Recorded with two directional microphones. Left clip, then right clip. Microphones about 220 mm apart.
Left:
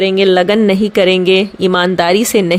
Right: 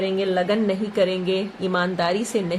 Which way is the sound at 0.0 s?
45° left (ahead or behind).